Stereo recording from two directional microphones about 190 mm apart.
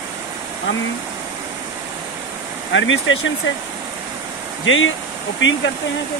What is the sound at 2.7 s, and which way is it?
Speech, 85° left.